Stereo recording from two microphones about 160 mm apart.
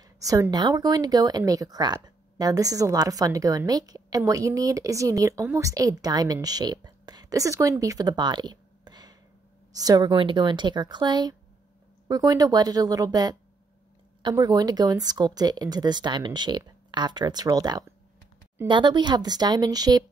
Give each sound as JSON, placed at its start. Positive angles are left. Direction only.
{"t": 0.0, "sound": "a woman's voice", "side_deg": -20}